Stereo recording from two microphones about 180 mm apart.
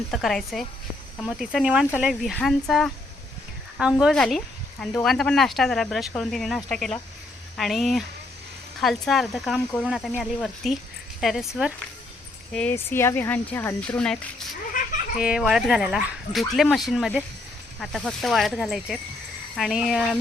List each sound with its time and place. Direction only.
0.1 s speech: centre (ahead or behind)
12.5 s speech: 10° left (ahead or behind)
14.8 s a sound: 45° left (ahead or behind)
15.2 s speech: 5° right (ahead or behind)